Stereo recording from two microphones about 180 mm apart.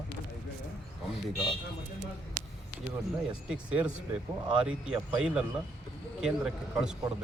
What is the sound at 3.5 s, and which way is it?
Speech, 5° right (ahead or behind).